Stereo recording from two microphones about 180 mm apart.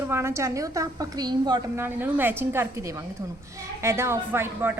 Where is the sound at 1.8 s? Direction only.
10° right (ahead or behind).